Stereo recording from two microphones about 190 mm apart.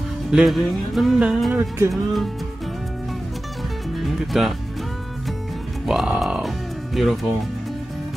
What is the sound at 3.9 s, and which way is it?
Music, centre (ahead or behind).